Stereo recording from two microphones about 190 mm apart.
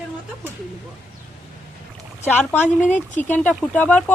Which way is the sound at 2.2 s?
10° left (ahead or behind).